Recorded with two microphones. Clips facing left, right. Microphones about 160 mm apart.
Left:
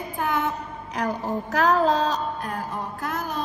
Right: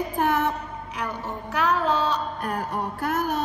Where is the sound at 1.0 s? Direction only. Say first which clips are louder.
Left 6 dB; 40° left (ahead or behind).